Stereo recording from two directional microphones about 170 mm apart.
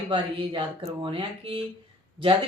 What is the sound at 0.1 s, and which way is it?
Speech, 30° right (ahead or behind).